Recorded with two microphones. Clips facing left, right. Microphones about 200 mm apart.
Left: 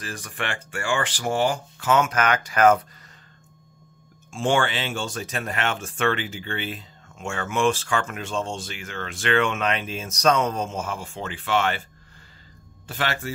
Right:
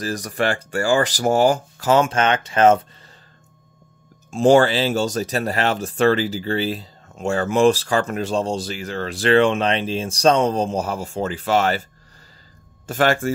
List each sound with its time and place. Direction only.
0.0 s speech: 40° right (ahead or behind)
4.3 s speech: 40° right (ahead or behind)
12.8 s speech: 45° right (ahead or behind)